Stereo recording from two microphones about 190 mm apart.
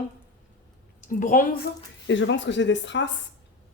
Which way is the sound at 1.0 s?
45° left (ahead or behind).